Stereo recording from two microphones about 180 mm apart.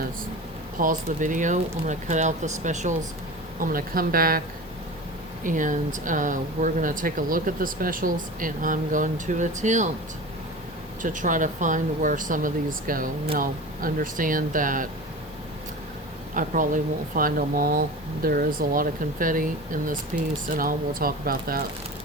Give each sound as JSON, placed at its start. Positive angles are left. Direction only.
{"t": 0.8, "sound": "speech", "side_deg": -45}
{"t": 3.6, "sound": "speech", "side_deg": -55}
{"t": 11.0, "sound": "speech", "side_deg": -45}
{"t": 16.3, "sound": "speech", "side_deg": -45}